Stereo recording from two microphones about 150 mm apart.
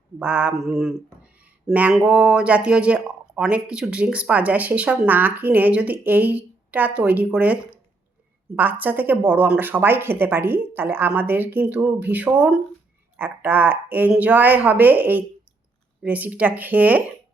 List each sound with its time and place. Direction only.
0.2 s speech: 5° right (ahead or behind)